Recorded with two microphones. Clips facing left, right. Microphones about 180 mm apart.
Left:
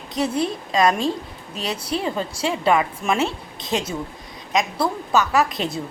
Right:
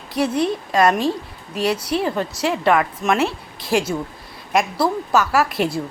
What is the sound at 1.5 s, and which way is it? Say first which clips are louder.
Speech: right 6 dB; 25° left (ahead or behind).